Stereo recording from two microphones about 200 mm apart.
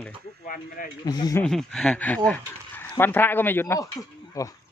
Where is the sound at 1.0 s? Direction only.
20° left (ahead or behind).